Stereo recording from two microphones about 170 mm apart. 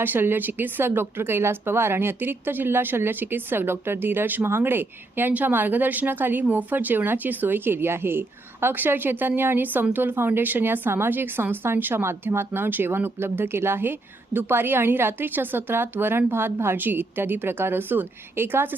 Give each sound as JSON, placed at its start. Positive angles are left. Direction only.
{"t": 0.0, "sound": "speech", "side_deg": -10}